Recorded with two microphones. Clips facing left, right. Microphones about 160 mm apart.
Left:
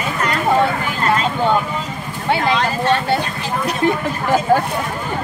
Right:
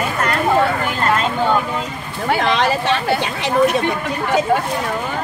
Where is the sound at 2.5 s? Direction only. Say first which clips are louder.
Even; 80° right.